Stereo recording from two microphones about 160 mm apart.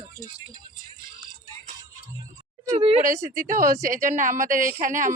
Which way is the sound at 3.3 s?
60° right (ahead or behind).